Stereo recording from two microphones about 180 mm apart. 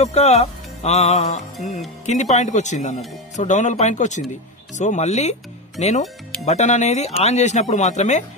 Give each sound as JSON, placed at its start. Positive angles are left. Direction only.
{"t": 0.0, "sound": "speech", "side_deg": 35}